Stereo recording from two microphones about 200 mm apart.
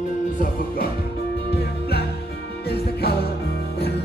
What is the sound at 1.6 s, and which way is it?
Music, 55° left (ahead or behind).